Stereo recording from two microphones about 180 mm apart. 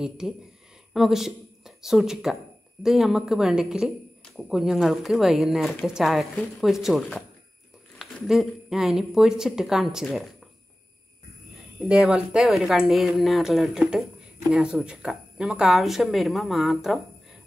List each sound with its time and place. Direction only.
0.2 s speech: 5° right (ahead or behind)
11.8 s speech: 5° right (ahead or behind)